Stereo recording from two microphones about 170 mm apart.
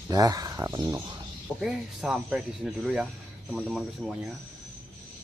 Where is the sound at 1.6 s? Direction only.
5° right (ahead or behind).